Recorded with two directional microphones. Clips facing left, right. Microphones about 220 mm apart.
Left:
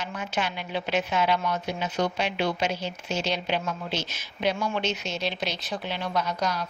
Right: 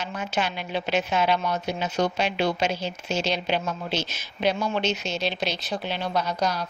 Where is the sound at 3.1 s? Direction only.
90° right.